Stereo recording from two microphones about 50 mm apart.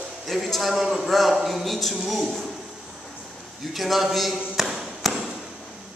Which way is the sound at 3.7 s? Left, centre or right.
Centre.